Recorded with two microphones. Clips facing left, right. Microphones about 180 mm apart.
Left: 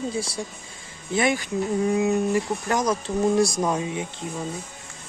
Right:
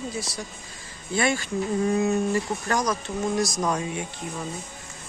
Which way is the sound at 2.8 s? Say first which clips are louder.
Left 4 dB; 30° left (ahead or behind).